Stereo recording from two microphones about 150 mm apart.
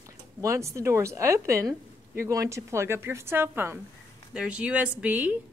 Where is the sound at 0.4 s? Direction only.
20° right (ahead or behind).